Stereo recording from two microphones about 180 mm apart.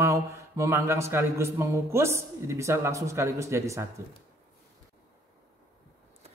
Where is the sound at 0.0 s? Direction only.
15° right (ahead or behind).